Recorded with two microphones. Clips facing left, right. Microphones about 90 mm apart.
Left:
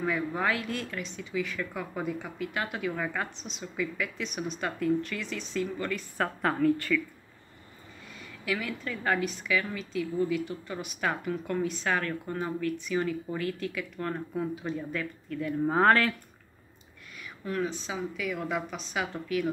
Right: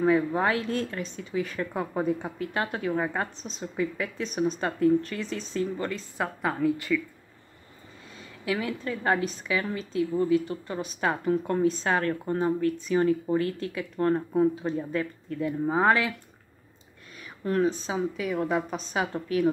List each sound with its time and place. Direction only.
0.0 s a woman's voice: 30° right (ahead or behind)
6.1 s a woman's voice: 10° right (ahead or behind)
8.2 s a woman's voice: 25° right (ahead or behind)
15.6 s a woman's voice: 10° right (ahead or behind)
17.2 s a woman's voice: 40° right (ahead or behind)